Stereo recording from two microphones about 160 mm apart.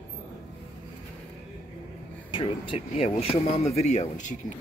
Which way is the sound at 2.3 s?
30° left (ahead or behind).